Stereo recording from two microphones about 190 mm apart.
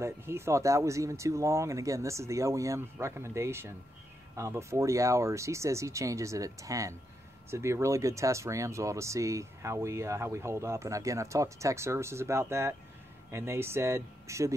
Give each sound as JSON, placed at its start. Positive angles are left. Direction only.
{"t": 0.0, "sound": "speech", "side_deg": -15}